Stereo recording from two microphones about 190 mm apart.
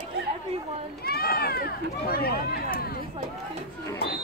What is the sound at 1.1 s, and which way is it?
Speech, 55° left (ahead or behind).